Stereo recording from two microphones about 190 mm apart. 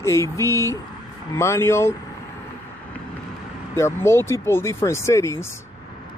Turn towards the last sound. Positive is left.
turn(degrees=15)  # may be behind; listen again after turning